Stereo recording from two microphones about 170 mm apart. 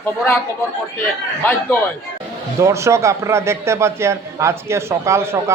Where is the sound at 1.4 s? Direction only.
10° left (ahead or behind).